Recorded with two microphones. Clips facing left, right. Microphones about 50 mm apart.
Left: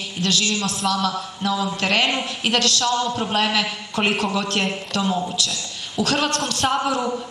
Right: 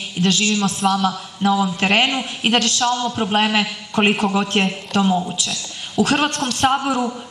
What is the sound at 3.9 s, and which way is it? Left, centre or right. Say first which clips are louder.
Speech: right 5 dB; centre.